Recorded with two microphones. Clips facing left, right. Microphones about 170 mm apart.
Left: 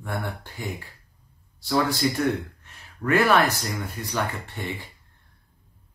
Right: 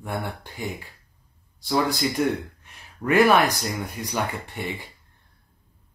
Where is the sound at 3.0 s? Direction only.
15° right (ahead or behind).